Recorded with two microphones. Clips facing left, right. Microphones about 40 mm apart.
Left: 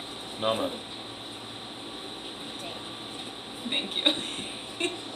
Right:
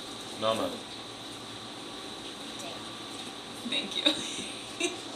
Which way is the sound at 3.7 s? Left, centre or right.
Centre.